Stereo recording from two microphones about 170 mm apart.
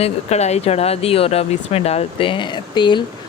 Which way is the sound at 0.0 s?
40° left (ahead or behind).